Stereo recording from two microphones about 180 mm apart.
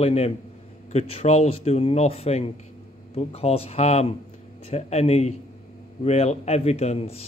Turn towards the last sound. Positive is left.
turn(degrees=35)  # may be behind; listen again after turning